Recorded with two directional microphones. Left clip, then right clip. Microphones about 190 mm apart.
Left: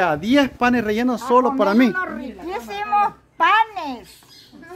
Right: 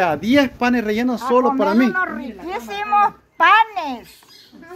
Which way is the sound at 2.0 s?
10° right (ahead or behind).